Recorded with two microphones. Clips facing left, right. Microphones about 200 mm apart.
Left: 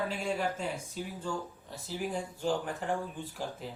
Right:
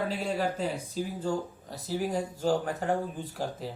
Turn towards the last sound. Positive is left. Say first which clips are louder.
# right 4 dB
turn(degrees=-40)  # may be behind; listen again after turning